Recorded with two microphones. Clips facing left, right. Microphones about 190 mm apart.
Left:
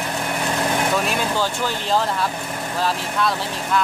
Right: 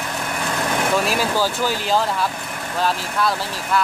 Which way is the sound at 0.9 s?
Centre (ahead or behind).